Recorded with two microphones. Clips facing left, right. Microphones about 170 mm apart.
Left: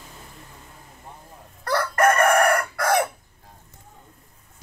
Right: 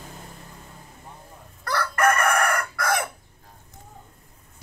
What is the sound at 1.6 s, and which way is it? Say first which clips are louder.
Chicken: left 3 dB; 35° left (ahead or behind).